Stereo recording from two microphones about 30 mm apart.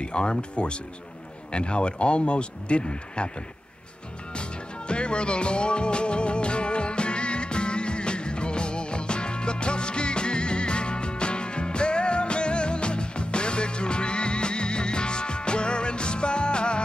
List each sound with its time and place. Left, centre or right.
0.0 s speech: left
4.3 s music: left